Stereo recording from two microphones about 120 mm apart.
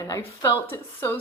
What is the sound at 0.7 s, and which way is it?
Speech, 20° left (ahead or behind).